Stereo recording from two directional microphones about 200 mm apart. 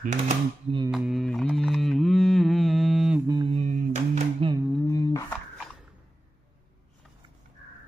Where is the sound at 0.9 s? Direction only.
Centre (ahead or behind).